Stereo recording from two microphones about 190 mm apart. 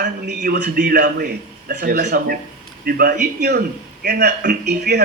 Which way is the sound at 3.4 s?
60° right (ahead or behind).